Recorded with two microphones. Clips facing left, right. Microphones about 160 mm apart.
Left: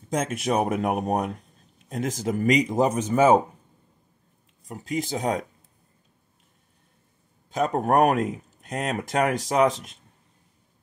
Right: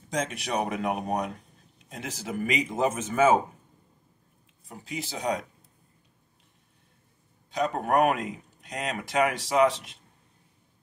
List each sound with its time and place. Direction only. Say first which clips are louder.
0.4 s speech: left 5 dB; 50° left (ahead or behind)
4.6 s speech: left 8 dB; 45° left (ahead or behind)
7.5 s speech: left 3 dB; 45° left (ahead or behind)